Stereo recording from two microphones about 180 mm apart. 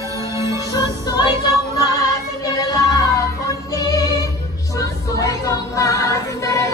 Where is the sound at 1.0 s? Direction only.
25° left (ahead or behind).